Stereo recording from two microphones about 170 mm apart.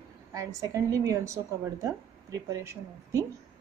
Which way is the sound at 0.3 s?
20° right (ahead or behind).